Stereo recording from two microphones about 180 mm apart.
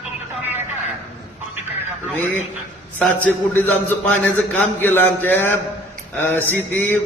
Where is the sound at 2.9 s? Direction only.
10° left (ahead or behind).